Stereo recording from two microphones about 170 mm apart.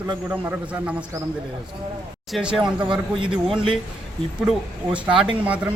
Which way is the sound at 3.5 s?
30° right (ahead or behind).